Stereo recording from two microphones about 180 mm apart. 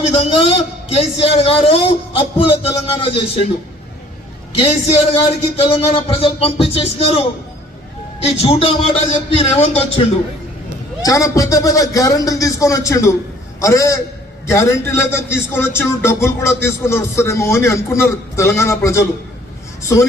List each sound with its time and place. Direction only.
0.0 s a man's voice: 35° left (ahead or behind)
4.9 s a man's voice: 35° left (ahead or behind)
11.0 s a man's voice: 20° left (ahead or behind)